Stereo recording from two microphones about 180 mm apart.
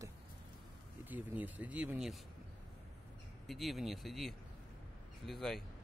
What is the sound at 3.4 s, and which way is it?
Speech, centre (ahead or behind).